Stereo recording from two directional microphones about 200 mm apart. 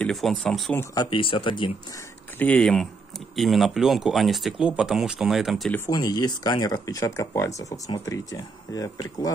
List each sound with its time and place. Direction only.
0.0 s speech: centre (ahead or behind)
0.9 s speech: 25° left (ahead or behind)
2.3 s speech: 5° left (ahead or behind)
5.9 s speech: 20° left (ahead or behind)